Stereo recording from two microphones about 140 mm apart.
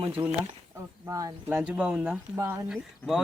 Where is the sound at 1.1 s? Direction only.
20° right (ahead or behind).